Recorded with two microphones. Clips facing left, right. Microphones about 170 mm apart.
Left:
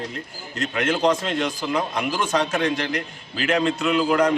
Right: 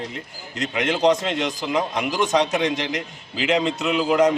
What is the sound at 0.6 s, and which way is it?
A man's voice, 20° right (ahead or behind).